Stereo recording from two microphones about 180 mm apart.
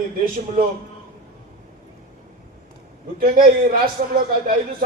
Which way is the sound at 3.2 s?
50° right (ahead or behind).